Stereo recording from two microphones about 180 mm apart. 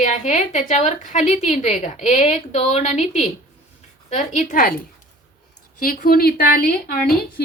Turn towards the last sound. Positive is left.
turn(degrees=55)  # may be behind; listen again after turning